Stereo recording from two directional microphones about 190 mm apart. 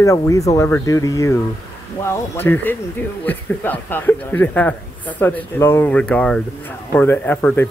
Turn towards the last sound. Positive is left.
turn(degrees=10)  # may be behind; listen again after turning